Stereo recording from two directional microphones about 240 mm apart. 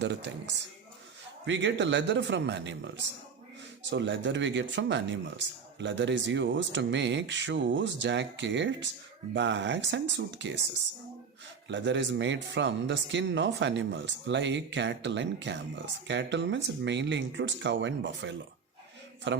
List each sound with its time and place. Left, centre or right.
0.0 s speech: right
11.7 s speech: right